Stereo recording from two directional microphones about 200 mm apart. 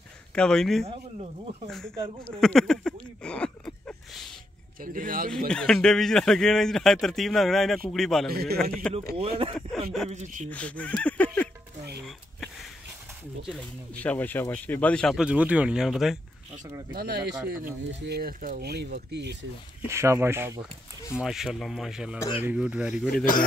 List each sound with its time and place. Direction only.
0.3 s speech: 5° left (ahead or behind)
0.8 s speech: 35° right (ahead or behind)
2.2 s a sound: 5° left (ahead or behind)
4.8 s speech: 45° right (ahead or behind)
5.5 s speech: 5° left (ahead or behind)
8.3 s speech: 50° right (ahead or behind)
9.1 s speech: 30° right (ahead or behind)
10.5 s speech: 5° left (ahead or behind)
13.5 s speech: 5° left (ahead or behind)
16.9 s speech: 50° right (ahead or behind)
19.9 s speech: 15° right (ahead or behind)
21.2 s speech: centre (ahead or behind)